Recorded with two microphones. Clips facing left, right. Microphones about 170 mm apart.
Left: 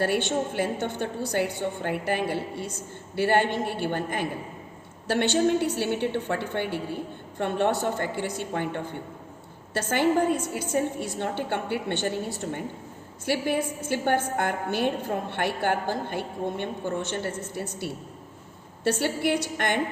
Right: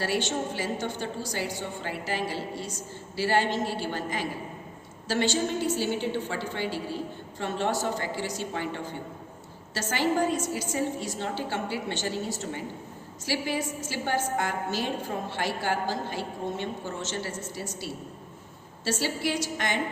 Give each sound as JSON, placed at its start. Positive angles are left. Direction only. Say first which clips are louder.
{"t": 0.0, "sound": "a woman's voice", "louder": "left 3 dB", "side_deg": 55}